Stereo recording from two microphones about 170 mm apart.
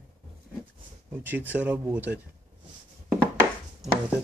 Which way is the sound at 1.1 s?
10° right (ahead or behind).